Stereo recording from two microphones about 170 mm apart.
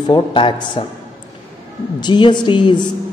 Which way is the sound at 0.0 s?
25° left (ahead or behind).